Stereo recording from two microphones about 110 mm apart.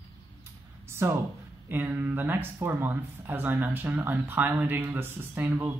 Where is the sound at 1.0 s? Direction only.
25° right (ahead or behind).